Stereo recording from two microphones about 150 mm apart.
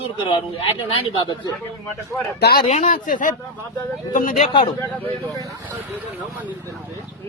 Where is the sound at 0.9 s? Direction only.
35° left (ahead or behind).